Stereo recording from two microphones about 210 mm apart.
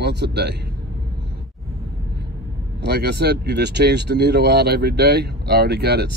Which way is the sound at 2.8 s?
50° right (ahead or behind).